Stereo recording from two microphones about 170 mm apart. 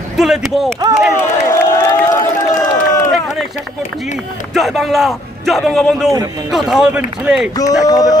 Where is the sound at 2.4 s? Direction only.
20° left (ahead or behind).